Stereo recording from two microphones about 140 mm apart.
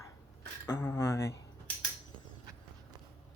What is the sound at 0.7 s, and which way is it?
Speech, 20° left (ahead or behind).